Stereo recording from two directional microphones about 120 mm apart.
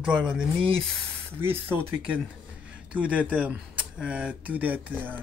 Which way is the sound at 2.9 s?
10° right (ahead or behind).